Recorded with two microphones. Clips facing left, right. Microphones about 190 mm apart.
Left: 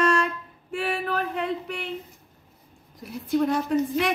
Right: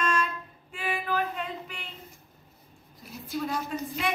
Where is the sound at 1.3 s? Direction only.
70° left (ahead or behind).